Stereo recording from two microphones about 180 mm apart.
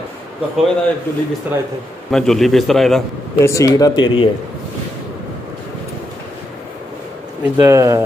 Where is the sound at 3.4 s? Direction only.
15° left (ahead or behind).